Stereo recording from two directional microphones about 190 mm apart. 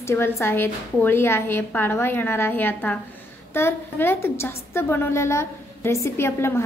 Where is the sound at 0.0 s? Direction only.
15° left (ahead or behind).